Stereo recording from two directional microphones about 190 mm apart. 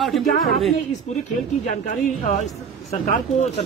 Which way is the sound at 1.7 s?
40° left (ahead or behind).